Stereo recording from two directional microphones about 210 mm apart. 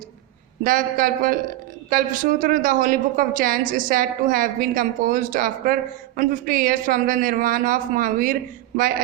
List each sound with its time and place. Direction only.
0.6 s a woman's voice: 40° right (ahead or behind)